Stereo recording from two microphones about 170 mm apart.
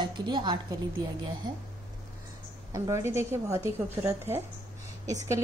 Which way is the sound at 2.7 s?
20° right (ahead or behind).